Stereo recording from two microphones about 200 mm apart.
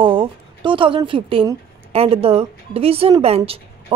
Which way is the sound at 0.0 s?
25° right (ahead or behind).